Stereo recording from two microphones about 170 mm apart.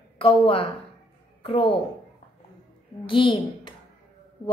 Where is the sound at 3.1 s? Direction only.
30° left (ahead or behind).